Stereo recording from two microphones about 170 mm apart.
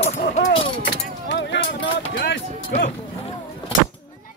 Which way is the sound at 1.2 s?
90° left.